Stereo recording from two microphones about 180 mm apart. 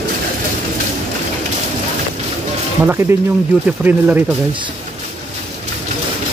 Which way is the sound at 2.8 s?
15° right (ahead or behind).